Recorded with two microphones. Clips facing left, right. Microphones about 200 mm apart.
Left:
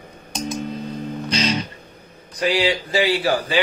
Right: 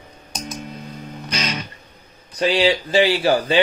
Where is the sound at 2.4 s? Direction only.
25° right (ahead or behind).